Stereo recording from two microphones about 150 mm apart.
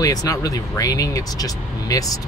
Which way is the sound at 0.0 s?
25° left (ahead or behind).